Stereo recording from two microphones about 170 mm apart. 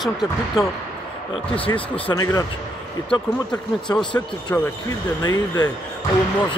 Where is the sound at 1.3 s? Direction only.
30° left (ahead or behind).